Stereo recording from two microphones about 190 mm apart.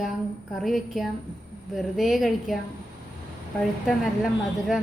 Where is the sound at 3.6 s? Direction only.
Centre (ahead or behind).